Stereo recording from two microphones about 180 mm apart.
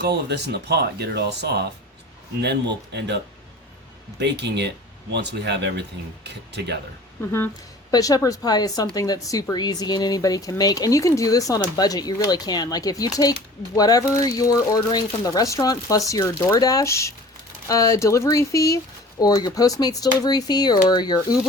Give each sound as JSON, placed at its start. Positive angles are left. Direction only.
{"t": 0.0, "sound": "speech", "side_deg": -65}
{"t": 4.2, "sound": "speech", "side_deg": -70}
{"t": 7.2, "sound": "a woman's voice", "side_deg": 10}